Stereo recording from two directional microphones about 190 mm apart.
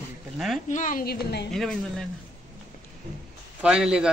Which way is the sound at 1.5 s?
Centre (ahead or behind).